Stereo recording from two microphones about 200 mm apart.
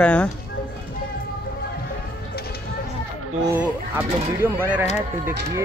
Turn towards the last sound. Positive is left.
turn(degrees=-10)  # may be behind; listen again after turning